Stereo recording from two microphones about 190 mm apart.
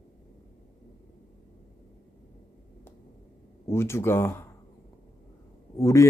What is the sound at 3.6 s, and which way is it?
Speech, 15° left (ahead or behind).